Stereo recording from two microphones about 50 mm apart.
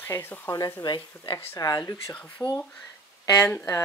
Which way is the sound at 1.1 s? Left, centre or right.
Left.